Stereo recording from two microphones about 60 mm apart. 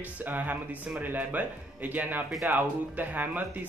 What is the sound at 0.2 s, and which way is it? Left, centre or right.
A man's voice, right.